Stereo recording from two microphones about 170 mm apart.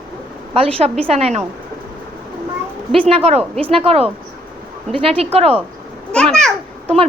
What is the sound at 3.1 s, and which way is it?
Speech, 35° right (ahead or behind).